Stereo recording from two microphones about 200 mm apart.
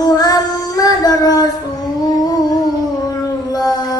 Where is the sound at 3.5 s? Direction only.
20° left (ahead or behind).